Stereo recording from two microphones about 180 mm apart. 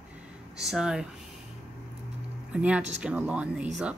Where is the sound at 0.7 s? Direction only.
5° right (ahead or behind).